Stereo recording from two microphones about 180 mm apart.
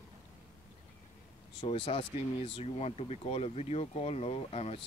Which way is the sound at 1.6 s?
30° left (ahead or behind).